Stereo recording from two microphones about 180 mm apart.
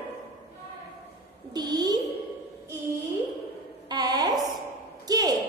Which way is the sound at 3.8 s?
20° right (ahead or behind).